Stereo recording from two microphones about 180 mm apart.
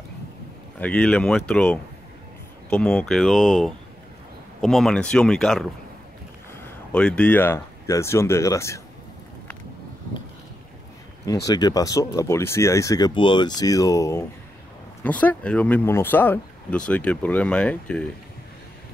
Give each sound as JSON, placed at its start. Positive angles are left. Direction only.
{"t": 0.7, "sound": "speech", "side_deg": 5}
{"t": 11.4, "sound": "speech", "side_deg": 20}
{"t": 15.0, "sound": "speech", "side_deg": 10}